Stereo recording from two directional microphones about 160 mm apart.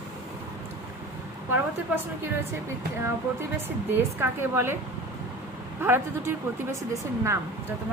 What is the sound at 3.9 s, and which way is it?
Speech, 15° right (ahead or behind).